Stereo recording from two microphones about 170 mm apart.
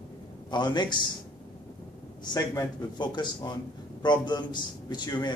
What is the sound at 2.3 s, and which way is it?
A man's voice, 25° left (ahead or behind).